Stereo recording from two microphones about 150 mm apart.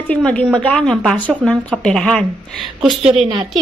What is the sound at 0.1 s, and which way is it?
A woman's voice, 5° left (ahead or behind).